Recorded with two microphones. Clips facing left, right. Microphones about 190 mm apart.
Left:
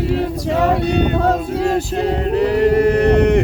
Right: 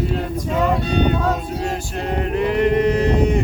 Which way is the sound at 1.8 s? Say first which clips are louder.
Left 6 dB; 35° left (ahead or behind).